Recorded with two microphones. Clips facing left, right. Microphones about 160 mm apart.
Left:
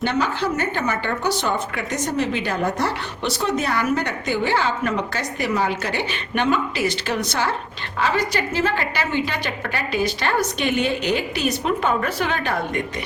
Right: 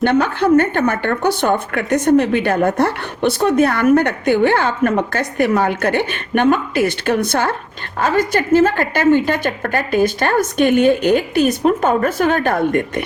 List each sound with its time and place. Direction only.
0.0 s a woman's voice: 55° right (ahead or behind)